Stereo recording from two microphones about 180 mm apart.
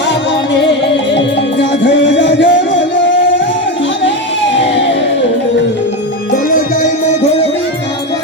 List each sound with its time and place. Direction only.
1.1 s music: 85° left